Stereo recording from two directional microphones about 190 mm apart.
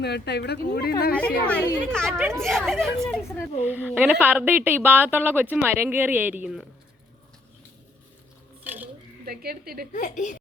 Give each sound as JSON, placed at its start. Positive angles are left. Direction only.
{"t": 0.0, "sound": "speech", "side_deg": 60}
{"t": 1.1, "sound": "a woman's voice", "side_deg": 5}
{"t": 2.1, "sound": "a woman's voice", "side_deg": -10}
{"t": 2.4, "sound": "a woman's voice", "side_deg": 0}
{"t": 3.7, "sound": "a woman's voice", "side_deg": -10}
{"t": 8.6, "sound": "a sound", "side_deg": -10}
{"t": 9.2, "sound": "speech", "side_deg": -55}
{"t": 9.9, "sound": "a woman's voice", "side_deg": 40}